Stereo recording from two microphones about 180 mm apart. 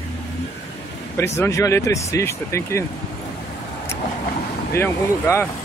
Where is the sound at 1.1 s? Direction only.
15° left (ahead or behind).